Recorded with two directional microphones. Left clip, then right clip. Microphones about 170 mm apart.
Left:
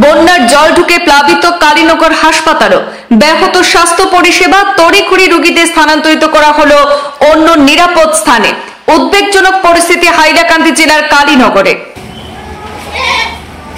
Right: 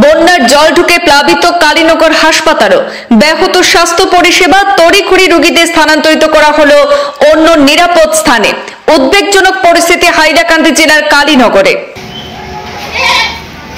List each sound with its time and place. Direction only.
0.0 s speech: 20° right (ahead or behind)